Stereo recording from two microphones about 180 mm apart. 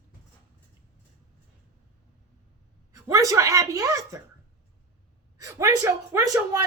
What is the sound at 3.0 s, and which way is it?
Speech, 20° right (ahead or behind).